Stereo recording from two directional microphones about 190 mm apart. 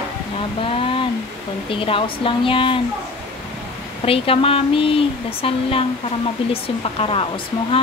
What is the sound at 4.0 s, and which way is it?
Speech, 30° left (ahead or behind).